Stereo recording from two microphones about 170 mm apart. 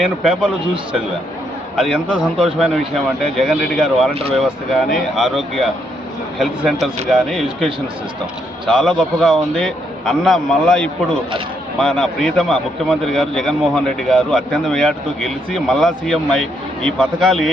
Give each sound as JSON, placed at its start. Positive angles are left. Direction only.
{"t": 0.0, "sound": "a man's voice", "side_deg": -5}
{"t": 1.7, "sound": "a man's voice", "side_deg": 0}
{"t": 4.1, "sound": "speech", "side_deg": -35}
{"t": 4.4, "sound": "a man's voice", "side_deg": 0}